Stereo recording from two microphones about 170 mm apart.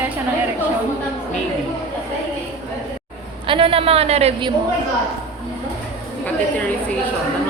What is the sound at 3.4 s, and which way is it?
A woman's voice, 30° right (ahead or behind).